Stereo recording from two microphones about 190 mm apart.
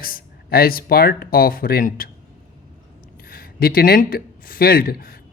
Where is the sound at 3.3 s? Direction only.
50° left (ahead or behind).